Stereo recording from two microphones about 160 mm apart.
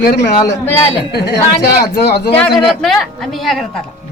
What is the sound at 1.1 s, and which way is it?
A woman's voice, 90° left.